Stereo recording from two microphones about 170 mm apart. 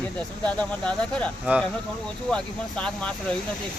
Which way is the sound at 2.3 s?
5° left (ahead or behind).